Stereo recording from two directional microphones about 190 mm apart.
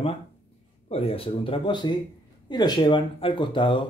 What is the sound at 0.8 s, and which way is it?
Speech, 30° left (ahead or behind).